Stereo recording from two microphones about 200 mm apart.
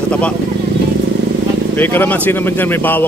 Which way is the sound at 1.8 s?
10° left (ahead or behind).